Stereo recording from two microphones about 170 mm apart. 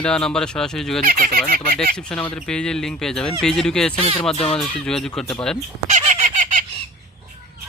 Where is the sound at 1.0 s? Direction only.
55° right (ahead or behind).